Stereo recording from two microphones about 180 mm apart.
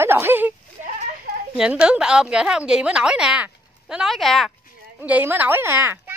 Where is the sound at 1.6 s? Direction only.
5° right (ahead or behind).